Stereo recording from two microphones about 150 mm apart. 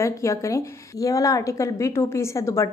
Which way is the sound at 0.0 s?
20° left (ahead or behind).